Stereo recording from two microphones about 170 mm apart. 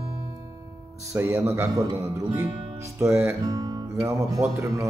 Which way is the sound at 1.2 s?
15° right (ahead or behind).